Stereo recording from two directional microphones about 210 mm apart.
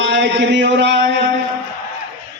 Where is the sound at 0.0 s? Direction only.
60° right (ahead or behind).